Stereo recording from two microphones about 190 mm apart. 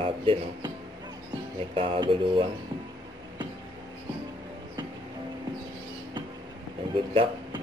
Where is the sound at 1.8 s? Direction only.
25° right (ahead or behind).